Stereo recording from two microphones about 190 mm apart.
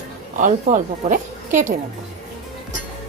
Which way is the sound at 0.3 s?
40° right (ahead or behind).